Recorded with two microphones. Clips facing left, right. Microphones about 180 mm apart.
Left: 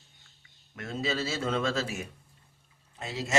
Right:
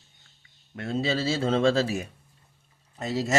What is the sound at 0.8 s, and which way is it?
Speech, 30° right (ahead or behind).